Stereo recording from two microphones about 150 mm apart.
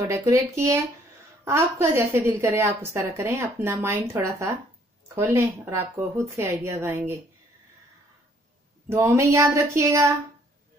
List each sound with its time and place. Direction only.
0.1 s a woman's voice: 20° right (ahead or behind)
8.8 s speech: 20° right (ahead or behind)